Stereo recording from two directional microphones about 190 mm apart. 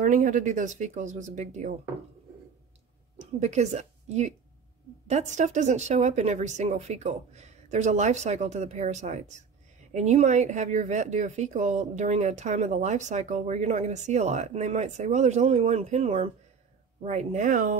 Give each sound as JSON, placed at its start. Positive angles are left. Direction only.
{"t": 0.0, "sound": "speech", "side_deg": -40}
{"t": 3.3, "sound": "speech", "side_deg": -35}